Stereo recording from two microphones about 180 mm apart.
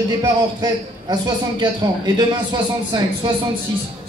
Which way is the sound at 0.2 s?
25° right (ahead or behind).